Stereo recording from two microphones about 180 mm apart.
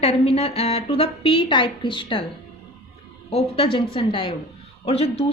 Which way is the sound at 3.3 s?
35° left (ahead or behind).